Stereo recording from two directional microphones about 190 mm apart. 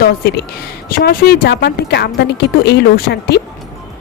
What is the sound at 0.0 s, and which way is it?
A woman's voice, 55° left (ahead or behind).